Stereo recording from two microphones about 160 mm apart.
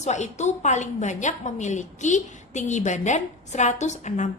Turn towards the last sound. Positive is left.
turn(degrees=50)  # may be behind; listen again after turning